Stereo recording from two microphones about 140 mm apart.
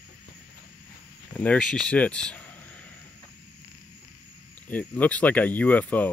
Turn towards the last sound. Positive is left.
turn(degrees=10)  # may be behind; listen again after turning